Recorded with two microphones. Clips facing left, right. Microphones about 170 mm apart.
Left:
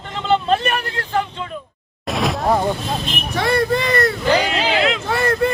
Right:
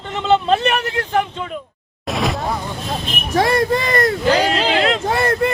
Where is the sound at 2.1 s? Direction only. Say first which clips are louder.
Even; centre (ahead or behind).